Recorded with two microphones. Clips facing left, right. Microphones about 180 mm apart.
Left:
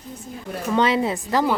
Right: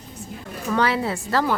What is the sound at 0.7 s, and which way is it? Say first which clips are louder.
Speech: left 2 dB; 20° left (ahead or behind).